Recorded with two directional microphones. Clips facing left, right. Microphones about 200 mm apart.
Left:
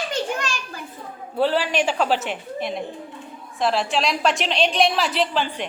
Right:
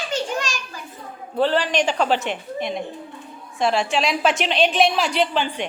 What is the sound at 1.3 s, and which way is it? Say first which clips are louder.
A woman's voice: right 1 dB; 10° left (ahead or behind).